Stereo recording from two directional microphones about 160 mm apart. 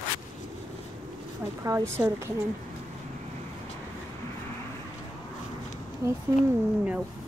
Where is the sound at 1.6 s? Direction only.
20° right (ahead or behind).